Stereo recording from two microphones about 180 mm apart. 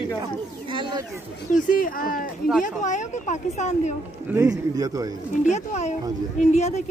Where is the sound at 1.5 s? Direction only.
50° left (ahead or behind).